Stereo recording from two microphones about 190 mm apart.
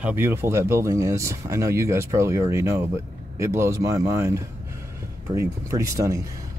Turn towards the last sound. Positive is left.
turn(degrees=-15)  # may be behind; listen again after turning